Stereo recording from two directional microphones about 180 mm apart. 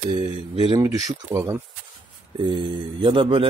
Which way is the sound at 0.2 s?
30° right (ahead or behind).